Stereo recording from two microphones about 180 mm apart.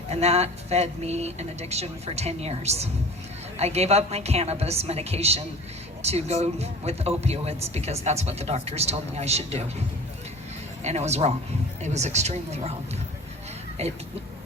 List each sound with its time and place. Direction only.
0.1 s speech: 35° right (ahead or behind)
10.8 s speech: 35° right (ahead or behind)